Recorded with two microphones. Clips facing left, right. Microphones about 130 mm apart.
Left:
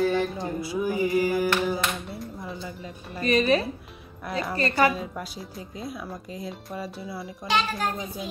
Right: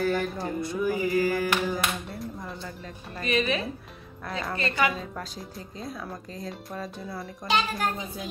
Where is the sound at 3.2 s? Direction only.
40° left (ahead or behind).